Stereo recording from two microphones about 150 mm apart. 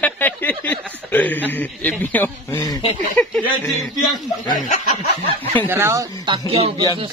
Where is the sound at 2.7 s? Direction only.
35° left (ahead or behind).